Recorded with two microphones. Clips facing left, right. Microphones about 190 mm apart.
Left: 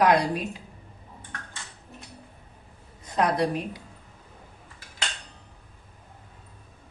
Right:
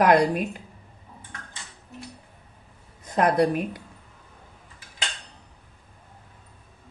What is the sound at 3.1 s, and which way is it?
Speech, 55° right (ahead or behind).